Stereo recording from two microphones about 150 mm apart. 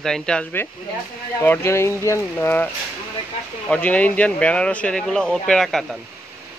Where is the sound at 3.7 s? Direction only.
10° left (ahead or behind).